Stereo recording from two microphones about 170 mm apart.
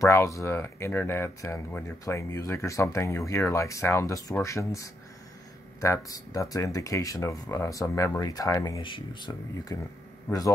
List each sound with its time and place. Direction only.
0.0 s speech: 15° left (ahead or behind)